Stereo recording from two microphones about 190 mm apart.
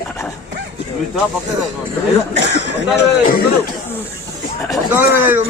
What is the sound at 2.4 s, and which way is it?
Speech, 65° left (ahead or behind).